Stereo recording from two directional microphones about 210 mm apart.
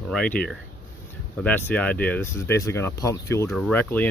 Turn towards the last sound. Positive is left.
turn(degrees=10)  # may be behind; listen again after turning